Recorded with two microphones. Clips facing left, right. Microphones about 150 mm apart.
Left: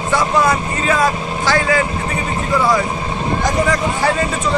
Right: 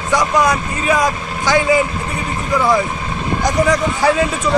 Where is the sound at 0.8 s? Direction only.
15° right (ahead or behind).